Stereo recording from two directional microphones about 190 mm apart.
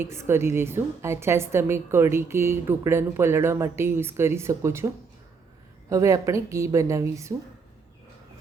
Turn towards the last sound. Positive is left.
turn(degrees=-15)  # may be behind; listen again after turning